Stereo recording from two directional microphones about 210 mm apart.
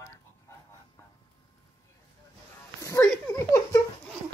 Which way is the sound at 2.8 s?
15° left (ahead or behind).